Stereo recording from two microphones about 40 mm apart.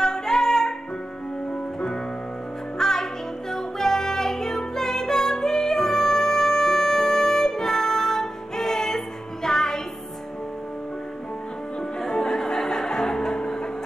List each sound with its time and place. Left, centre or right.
0.0 s music: centre
2.8 s music: centre
12.0 s music: centre